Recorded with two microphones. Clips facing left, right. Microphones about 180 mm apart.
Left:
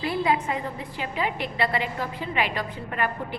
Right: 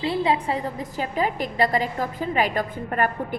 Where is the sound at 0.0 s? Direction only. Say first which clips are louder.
Right 2 dB; 25° right (ahead or behind).